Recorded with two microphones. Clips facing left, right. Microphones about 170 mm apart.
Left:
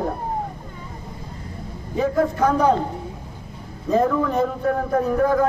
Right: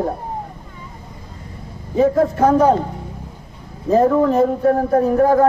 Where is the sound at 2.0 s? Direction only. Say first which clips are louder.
Right 5 dB; 35° right (ahead or behind).